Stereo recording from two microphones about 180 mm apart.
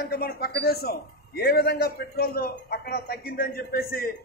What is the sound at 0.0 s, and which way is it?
A man's voice, 60° left (ahead or behind).